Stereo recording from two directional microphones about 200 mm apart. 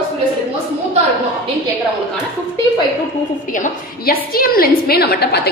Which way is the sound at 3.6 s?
45° left (ahead or behind).